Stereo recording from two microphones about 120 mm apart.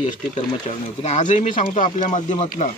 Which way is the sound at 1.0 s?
75° left (ahead or behind).